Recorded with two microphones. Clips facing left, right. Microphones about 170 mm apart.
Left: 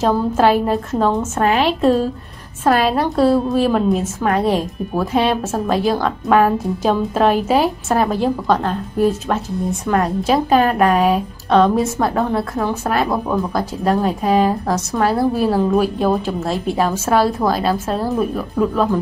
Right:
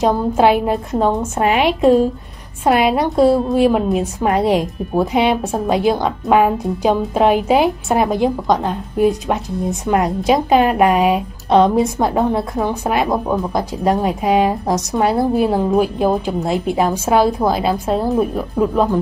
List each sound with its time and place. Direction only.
0.0 s a woman's voice: 15° right (ahead or behind)